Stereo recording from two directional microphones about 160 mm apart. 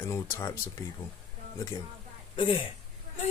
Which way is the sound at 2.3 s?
35° left (ahead or behind).